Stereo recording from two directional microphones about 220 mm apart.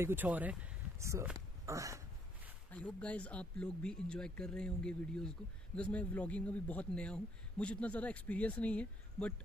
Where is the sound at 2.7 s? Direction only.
5° left (ahead or behind).